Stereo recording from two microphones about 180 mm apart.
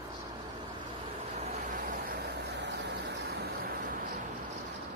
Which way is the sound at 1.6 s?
50° right (ahead or behind).